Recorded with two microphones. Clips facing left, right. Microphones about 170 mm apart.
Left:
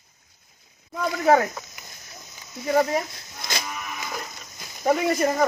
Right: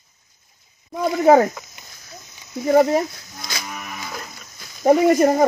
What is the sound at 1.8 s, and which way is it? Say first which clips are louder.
Horse: left 1 dB; 25° right (ahead or behind).